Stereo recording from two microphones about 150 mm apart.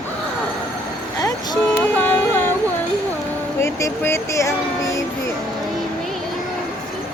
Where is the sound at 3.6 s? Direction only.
20° left (ahead or behind).